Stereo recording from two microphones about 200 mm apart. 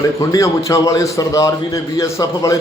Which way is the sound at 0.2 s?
15° left (ahead or behind).